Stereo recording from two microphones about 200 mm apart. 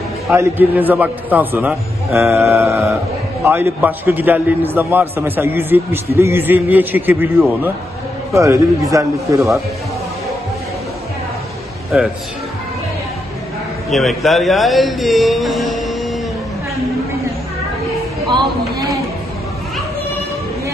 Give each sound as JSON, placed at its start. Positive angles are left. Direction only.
{"t": 0.3, "sound": "a man's voice", "side_deg": -10}
{"t": 13.8, "sound": "a man's voice", "side_deg": 0}
{"t": 18.3, "sound": "a sound", "side_deg": -20}